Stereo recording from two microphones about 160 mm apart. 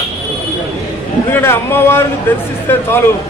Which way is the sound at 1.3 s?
15° left (ahead or behind).